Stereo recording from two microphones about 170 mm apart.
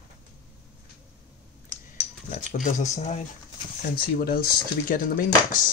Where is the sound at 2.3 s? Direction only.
50° left (ahead or behind).